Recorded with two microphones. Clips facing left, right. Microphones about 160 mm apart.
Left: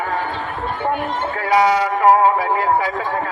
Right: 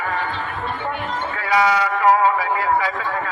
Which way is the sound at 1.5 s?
45° left (ahead or behind).